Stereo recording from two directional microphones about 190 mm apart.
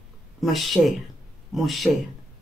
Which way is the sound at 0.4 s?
Centre (ahead or behind).